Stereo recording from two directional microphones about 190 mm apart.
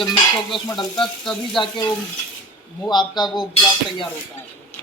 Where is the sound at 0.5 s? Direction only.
25° left (ahead or behind).